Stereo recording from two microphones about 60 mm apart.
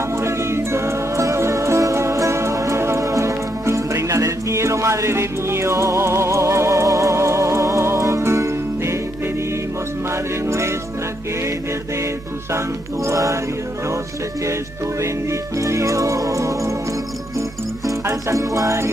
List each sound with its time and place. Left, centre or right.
0.1 s music: right
10.5 s music: right
12.5 s music: right
14.4 s music: right
17.8 s music: right